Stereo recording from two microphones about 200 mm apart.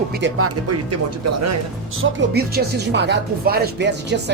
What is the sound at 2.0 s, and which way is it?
Speech, 90° right.